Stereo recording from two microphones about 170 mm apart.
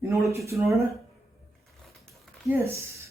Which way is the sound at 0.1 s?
15° right (ahead or behind).